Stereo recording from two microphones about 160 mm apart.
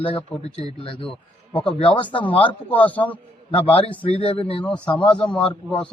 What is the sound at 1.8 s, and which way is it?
Speech, 35° left (ahead or behind).